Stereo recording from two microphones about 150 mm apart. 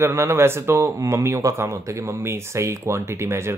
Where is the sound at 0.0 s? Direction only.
15° right (ahead or behind).